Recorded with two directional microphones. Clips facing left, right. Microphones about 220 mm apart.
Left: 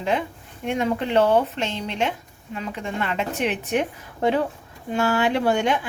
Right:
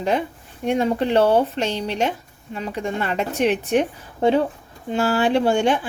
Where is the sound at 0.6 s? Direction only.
35° right (ahead or behind).